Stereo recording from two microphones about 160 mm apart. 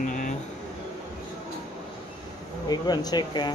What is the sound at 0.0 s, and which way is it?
Vehicle, 55° left (ahead or behind).